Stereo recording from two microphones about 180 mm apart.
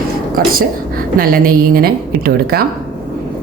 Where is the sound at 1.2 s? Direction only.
55° right (ahead or behind).